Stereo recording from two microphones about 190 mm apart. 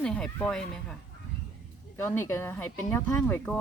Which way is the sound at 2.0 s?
10° left (ahead or behind).